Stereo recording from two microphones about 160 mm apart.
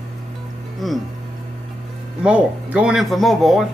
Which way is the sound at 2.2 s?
10° right (ahead or behind).